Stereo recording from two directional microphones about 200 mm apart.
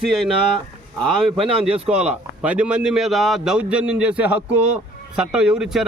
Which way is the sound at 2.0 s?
5° right (ahead or behind).